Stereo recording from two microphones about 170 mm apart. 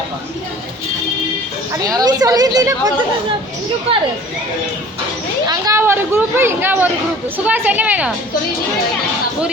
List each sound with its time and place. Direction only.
1.7 s speech: 20° right (ahead or behind)
5.5 s a woman's voice: 20° right (ahead or behind)